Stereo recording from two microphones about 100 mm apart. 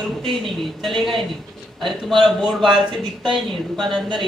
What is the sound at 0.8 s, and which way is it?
A man's voice, centre (ahead or behind).